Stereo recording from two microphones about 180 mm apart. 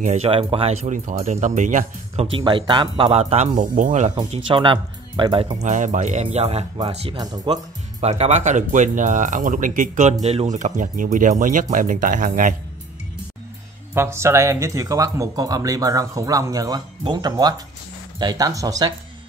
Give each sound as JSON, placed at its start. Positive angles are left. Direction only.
{"t": 0.0, "sound": "speech", "side_deg": -35}
{"t": 2.3, "sound": "speech", "side_deg": -25}
{"t": 4.1, "sound": "speech", "side_deg": -25}
{"t": 5.6, "sound": "speech", "side_deg": -45}
{"t": 13.9, "sound": "speech", "side_deg": -15}